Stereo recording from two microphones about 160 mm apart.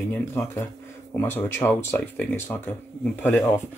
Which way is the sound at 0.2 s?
15° left (ahead or behind).